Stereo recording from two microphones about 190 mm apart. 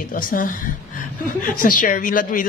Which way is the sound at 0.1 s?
45° left (ahead or behind).